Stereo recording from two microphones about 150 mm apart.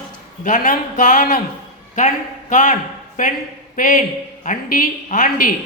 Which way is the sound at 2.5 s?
60° left (ahead or behind).